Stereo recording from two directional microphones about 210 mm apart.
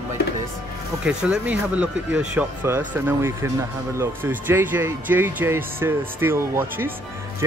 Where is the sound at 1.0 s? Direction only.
5° right (ahead or behind).